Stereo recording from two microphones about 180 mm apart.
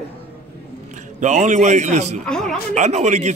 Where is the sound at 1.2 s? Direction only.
40° right (ahead or behind).